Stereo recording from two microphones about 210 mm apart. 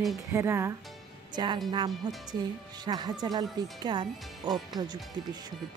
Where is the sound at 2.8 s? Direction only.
20° right (ahead or behind).